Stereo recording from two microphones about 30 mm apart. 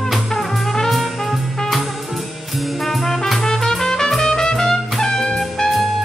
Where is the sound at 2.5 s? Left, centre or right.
Centre.